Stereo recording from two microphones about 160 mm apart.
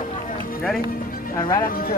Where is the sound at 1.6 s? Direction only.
65° left (ahead or behind).